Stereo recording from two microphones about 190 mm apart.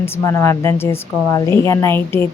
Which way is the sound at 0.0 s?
15° left (ahead or behind).